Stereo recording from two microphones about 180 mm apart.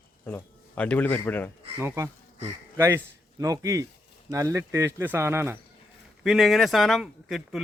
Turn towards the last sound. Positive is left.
turn(degrees=0)  # may be behind; listen again after turning